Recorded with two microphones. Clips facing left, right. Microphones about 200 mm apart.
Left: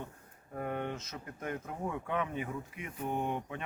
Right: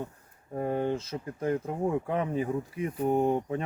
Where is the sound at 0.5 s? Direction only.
30° right (ahead or behind).